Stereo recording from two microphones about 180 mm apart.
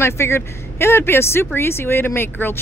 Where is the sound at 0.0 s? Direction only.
15° left (ahead or behind).